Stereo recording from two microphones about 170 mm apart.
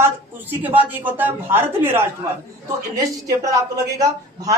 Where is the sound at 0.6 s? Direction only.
10° right (ahead or behind).